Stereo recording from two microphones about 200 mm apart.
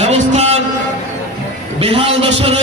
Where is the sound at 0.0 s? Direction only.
30° right (ahead or behind).